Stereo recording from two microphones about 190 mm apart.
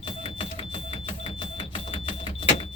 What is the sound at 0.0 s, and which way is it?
Smoke detector, 30° left (ahead or behind).